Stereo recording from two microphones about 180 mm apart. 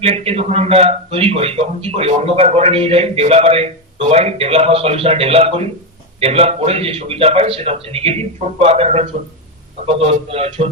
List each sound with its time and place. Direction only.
0.0 s a man's voice: 35° right (ahead or behind)